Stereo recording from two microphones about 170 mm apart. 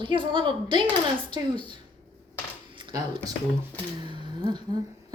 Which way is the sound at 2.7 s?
25° right (ahead or behind).